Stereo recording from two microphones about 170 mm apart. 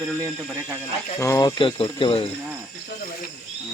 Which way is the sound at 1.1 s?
20° left (ahead or behind).